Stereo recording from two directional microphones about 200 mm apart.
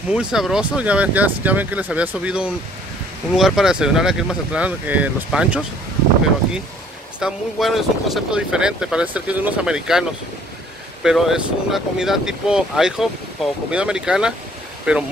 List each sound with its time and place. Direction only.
0.1 s speech: 5° right (ahead or behind)
7.2 s speech: centre (ahead or behind)